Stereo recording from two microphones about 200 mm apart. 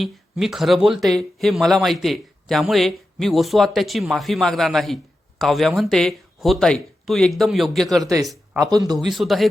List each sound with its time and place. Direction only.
0.0 s speech: centre (ahead or behind)
8.0 s speech: 15° right (ahead or behind)
9.0 s speech: centre (ahead or behind)